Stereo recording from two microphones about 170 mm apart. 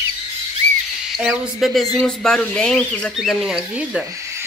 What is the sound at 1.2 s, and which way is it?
Speech, centre (ahead or behind).